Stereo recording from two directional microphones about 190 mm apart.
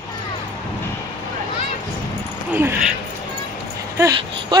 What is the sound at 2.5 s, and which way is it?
Speech, 10° right (ahead or behind).